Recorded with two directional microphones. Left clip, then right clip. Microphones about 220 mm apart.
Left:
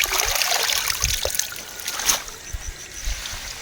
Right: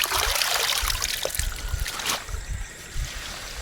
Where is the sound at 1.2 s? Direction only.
10° left (ahead or behind).